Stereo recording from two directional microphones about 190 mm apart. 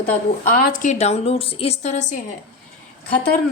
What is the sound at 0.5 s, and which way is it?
A woman's voice, 45° left (ahead or behind).